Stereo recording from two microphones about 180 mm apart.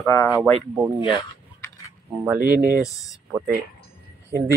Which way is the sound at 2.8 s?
20° left (ahead or behind).